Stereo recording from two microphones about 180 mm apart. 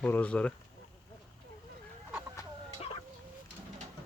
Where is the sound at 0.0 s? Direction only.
5° left (ahead or behind).